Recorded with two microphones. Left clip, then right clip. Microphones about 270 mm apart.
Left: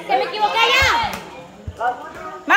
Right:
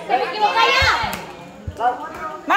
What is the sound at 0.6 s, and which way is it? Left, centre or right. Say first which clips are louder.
Speech: left 1 dB; left.